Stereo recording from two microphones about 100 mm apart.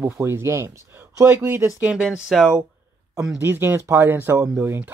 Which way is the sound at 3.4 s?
20° right (ahead or behind).